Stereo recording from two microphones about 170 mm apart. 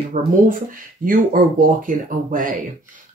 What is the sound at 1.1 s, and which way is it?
Speech, 55° right (ahead or behind).